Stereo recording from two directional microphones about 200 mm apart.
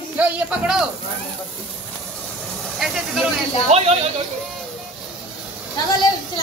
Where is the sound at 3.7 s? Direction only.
30° right (ahead or behind).